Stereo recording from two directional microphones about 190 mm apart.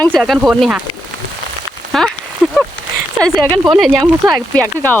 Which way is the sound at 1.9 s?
Centre (ahead or behind).